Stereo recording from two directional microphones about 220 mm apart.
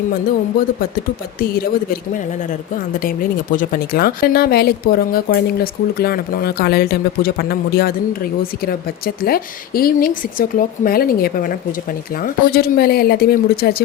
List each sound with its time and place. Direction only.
1.4 s speech: 40° left (ahead or behind)